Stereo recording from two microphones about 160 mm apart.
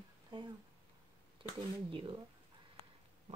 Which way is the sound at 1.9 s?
35° right (ahead or behind).